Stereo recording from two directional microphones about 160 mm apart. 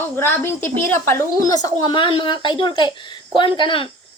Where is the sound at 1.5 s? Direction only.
25° left (ahead or behind).